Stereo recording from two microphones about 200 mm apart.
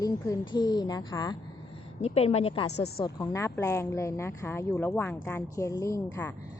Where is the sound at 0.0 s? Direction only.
20° left (ahead or behind).